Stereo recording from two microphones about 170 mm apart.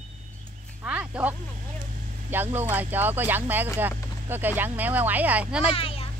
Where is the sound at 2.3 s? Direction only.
10° right (ahead or behind).